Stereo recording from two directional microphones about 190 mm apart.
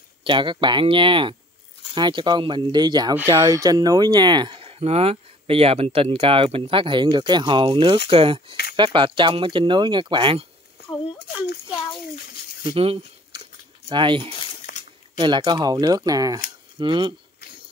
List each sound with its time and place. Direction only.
0.2 s speech: 25° right (ahead or behind)
12.6 s speech: 30° right (ahead or behind)
14.4 s a sound: 40° left (ahead or behind)
15.1 s speech: 25° right (ahead or behind)